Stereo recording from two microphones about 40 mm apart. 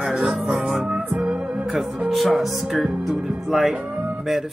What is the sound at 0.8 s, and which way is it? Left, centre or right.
Music, right.